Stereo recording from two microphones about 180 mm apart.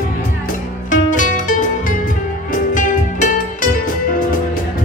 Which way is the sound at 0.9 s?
45° left (ahead or behind).